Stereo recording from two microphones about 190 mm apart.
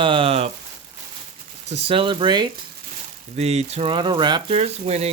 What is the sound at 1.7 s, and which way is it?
Speech, 30° right (ahead or behind).